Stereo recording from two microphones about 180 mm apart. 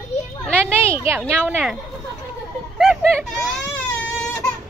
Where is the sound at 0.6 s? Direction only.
15° right (ahead or behind).